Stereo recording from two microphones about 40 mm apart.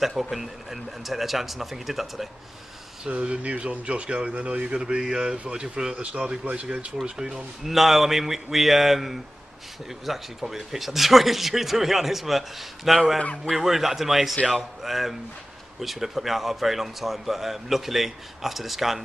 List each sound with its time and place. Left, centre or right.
0.0 s a man's voice: centre
3.3 s speech: right
7.6 s a man's voice: centre